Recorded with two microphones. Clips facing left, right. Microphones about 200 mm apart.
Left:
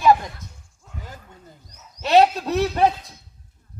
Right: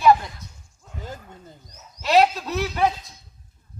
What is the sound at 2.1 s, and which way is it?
Speech, 30° left (ahead or behind).